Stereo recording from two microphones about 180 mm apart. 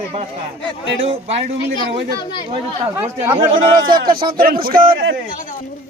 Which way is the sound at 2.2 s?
25° left (ahead or behind).